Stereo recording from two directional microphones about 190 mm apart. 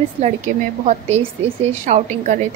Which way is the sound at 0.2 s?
30° right (ahead or behind).